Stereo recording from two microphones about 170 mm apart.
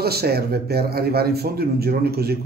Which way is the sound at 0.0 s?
65° right (ahead or behind).